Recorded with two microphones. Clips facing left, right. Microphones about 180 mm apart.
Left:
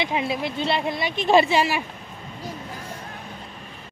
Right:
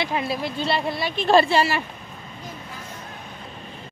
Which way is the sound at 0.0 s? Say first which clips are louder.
Even; 20° left (ahead or behind).